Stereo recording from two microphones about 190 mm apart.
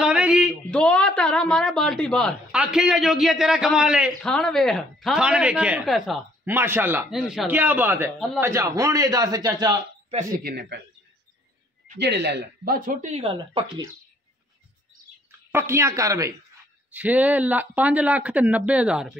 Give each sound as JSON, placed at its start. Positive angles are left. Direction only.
{"t": 0.0, "sound": "a man's voice", "side_deg": -5}
{"t": 6.5, "sound": "a man's voice", "side_deg": -10}
{"t": 10.4, "sound": "a man's voice", "side_deg": -60}
{"t": 12.0, "sound": "speech", "side_deg": -60}
{"t": 15.5, "sound": "speech", "side_deg": -15}